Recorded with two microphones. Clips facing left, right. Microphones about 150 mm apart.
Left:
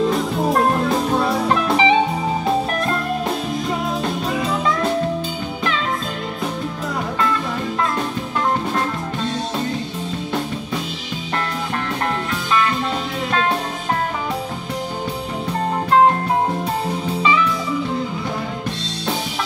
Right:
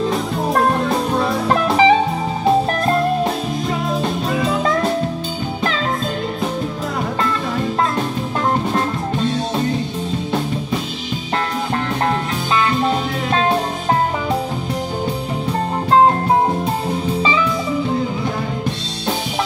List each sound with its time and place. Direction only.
0.1 s music: centre (ahead or behind)
1.5 s music: 45° right (ahead or behind)
4.3 s music: centre (ahead or behind)